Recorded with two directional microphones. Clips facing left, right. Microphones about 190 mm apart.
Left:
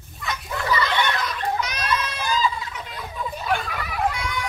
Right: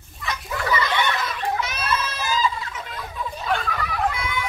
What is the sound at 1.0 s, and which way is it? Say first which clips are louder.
Fowl: even; centre (ahead or behind).